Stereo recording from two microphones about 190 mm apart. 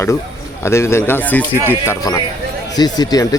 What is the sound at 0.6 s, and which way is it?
Speech, 15° left (ahead or behind).